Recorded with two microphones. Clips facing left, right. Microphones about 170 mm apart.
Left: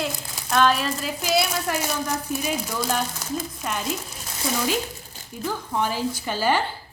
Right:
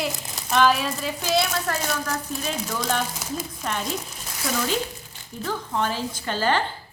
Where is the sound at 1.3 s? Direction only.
10° left (ahead or behind).